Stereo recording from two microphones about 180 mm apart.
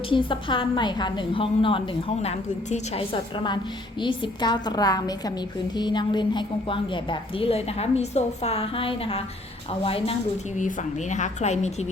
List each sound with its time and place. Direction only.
0.1 s a woman's voice: 30° left (ahead or behind)
10.6 s a woman's voice: 45° left (ahead or behind)